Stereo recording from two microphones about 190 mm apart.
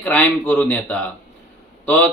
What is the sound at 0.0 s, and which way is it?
A man's voice, 10° left (ahead or behind).